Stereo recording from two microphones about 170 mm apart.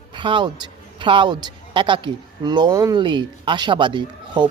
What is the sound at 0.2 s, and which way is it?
A man's voice, 30° right (ahead or behind).